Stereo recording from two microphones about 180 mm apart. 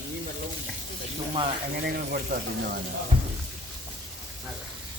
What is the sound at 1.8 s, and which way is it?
Speech, 55° right (ahead or behind).